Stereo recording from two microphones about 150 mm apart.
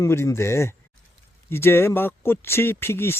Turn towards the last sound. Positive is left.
turn(degrees=15)  # may be behind; listen again after turning